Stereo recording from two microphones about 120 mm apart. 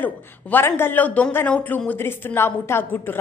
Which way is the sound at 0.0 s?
15° left (ahead or behind).